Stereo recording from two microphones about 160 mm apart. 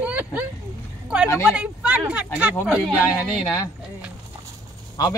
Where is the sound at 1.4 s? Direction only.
5° right (ahead or behind).